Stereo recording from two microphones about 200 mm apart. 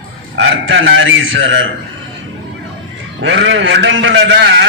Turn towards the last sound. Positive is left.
turn(degrees=-65)  # may be behind; listen again after turning